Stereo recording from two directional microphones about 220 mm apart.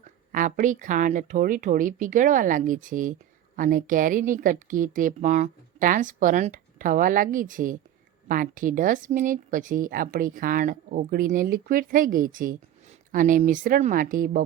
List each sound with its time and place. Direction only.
0.3 s speech: 35° right (ahead or behind)